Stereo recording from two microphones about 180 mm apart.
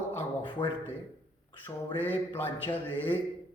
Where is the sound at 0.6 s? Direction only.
25° left (ahead or behind).